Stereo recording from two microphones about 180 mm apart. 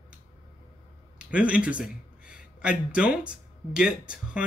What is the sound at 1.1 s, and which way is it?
A man's voice, 5° right (ahead or behind).